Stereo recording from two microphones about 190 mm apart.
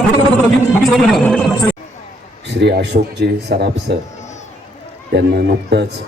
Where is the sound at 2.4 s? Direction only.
65° right (ahead or behind).